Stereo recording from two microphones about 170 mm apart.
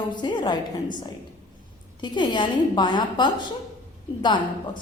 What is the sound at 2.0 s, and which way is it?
A woman's voice, 25° left (ahead or behind).